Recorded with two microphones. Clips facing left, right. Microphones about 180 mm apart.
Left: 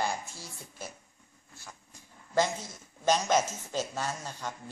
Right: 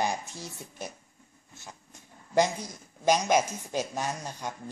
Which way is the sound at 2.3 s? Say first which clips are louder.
Right 3 dB; 15° right (ahead or behind).